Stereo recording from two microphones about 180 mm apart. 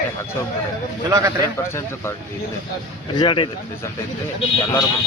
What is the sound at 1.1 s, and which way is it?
Speech, 20° right (ahead or behind).